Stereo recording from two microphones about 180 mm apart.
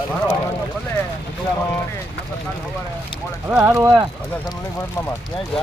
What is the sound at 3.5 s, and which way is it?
Speech, 15° right (ahead or behind).